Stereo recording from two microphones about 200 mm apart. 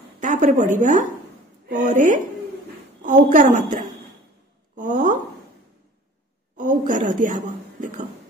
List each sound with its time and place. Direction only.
0.2 s a woman's voice: 40° right (ahead or behind)
6.5 s speech: 40° right (ahead or behind)